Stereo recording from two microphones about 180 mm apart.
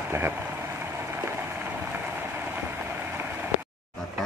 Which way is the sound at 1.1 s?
10° right (ahead or behind).